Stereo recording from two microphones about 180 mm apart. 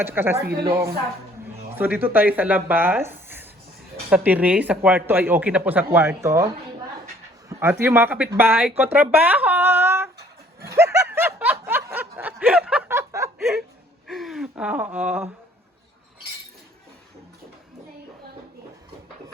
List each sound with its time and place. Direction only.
0.0 s speech: 10° right (ahead or behind)
7.6 s speech: 15° right (ahead or behind)
10.7 s snicker: 15° right (ahead or behind)
13.4 s a sound: centre (ahead or behind)